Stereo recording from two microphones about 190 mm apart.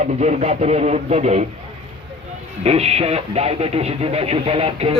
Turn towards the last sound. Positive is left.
turn(degrees=-30)  # may be behind; listen again after turning